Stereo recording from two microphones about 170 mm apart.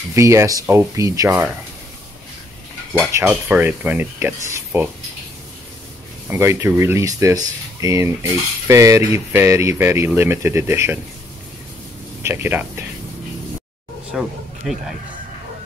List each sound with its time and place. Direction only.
0.1 s speech: 15° right (ahead or behind)
3.1 s speech: 15° right (ahead or behind)
6.2 s speech: 15° right (ahead or behind)
12.2 s speech: 15° right (ahead or behind)
14.1 s speech: centre (ahead or behind)